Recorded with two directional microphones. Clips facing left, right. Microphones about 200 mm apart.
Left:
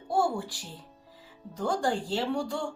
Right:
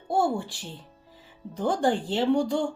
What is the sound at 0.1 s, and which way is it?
Music, 25° right (ahead or behind).